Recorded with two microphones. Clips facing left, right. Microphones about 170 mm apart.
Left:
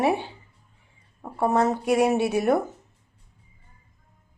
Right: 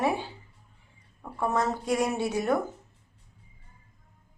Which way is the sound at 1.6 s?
65° left (ahead or behind).